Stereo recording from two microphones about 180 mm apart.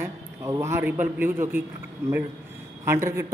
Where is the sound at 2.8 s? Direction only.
15° right (ahead or behind).